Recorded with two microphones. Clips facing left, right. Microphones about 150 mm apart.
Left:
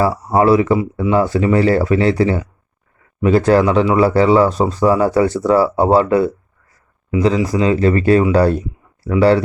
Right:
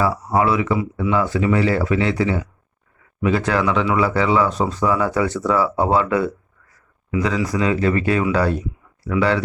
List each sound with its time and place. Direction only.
0.0 s speech: 40° left (ahead or behind)